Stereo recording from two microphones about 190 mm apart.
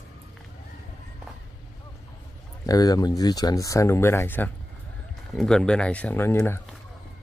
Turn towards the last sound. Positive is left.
turn(degrees=15)  # may be behind; listen again after turning